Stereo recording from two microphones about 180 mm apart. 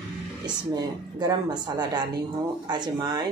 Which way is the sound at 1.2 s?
25° right (ahead or behind).